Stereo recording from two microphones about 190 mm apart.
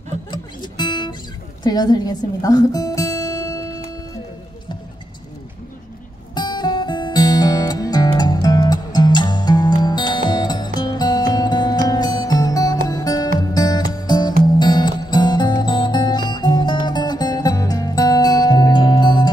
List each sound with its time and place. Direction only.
0.3 s music: 25° left (ahead or behind)
6.3 s music: 20° left (ahead or behind)